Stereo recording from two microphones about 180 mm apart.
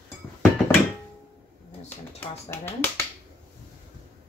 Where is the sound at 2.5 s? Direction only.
10° left (ahead or behind).